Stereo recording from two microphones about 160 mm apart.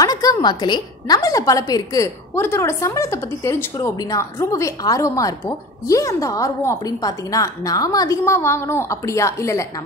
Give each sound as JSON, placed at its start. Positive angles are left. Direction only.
{"t": 0.0, "sound": "a woman's voice", "side_deg": 20}